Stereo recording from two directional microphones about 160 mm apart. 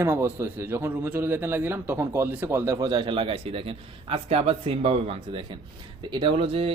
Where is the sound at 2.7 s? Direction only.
25° right (ahead or behind).